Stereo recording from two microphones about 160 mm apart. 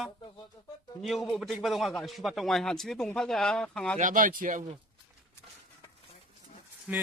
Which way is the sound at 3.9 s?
55° right (ahead or behind).